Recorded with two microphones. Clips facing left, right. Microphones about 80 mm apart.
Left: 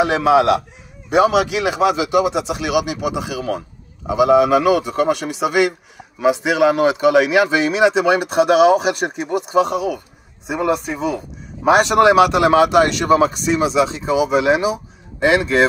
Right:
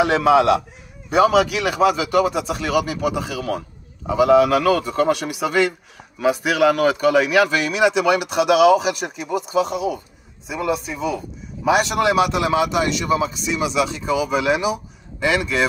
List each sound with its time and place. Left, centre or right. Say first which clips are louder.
0.0 s speech: left 1 dB; centre
2.3 s speech: left 2 dB; centre; by 9.8 s left
10.7 s a man's voice: left 1 dB; left